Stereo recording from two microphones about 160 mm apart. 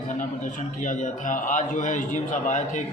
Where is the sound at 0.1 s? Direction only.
50° left (ahead or behind).